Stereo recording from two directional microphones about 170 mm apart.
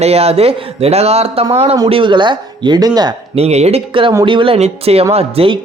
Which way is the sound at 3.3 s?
40° right (ahead or behind).